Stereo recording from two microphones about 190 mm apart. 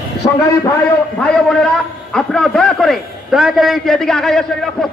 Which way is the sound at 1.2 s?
5° left (ahead or behind).